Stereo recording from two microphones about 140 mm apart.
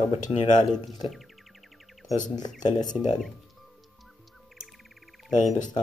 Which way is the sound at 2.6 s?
30° left (ahead or behind).